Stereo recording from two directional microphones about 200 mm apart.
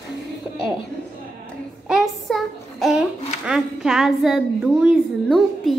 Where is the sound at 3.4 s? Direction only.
5° right (ahead or behind).